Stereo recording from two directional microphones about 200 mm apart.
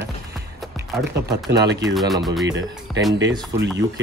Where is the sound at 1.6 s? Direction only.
60° right (ahead or behind).